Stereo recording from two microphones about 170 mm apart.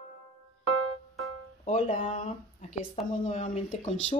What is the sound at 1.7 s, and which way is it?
Speech, 40° left (ahead or behind).